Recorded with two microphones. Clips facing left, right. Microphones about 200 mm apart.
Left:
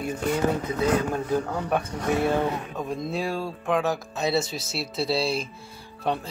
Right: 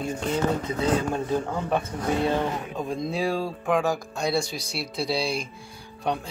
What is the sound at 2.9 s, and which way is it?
Speech, centre (ahead or behind).